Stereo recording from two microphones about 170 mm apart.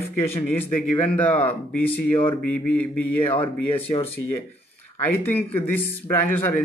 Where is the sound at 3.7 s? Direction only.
35° left (ahead or behind).